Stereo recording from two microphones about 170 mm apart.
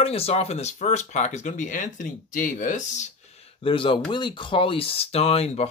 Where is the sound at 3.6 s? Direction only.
30° left (ahead or behind).